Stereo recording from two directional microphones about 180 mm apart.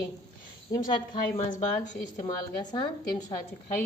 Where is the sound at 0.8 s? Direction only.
45° left (ahead or behind).